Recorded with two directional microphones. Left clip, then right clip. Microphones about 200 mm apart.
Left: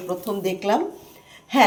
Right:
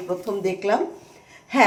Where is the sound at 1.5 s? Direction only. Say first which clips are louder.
Left 1 dB; 10° right (ahead or behind).